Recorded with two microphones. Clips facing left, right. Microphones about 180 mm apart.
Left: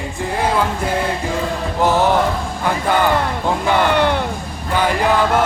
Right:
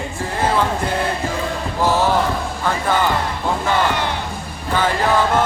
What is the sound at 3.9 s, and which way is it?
Music, 60° left (ahead or behind).